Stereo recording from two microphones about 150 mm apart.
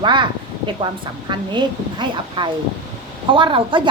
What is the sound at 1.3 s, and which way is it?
Speech, 30° right (ahead or behind).